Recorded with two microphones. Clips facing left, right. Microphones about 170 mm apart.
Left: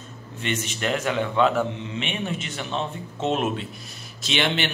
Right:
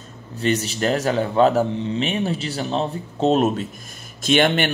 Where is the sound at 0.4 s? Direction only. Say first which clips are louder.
Right 7 dB; 35° right (ahead or behind).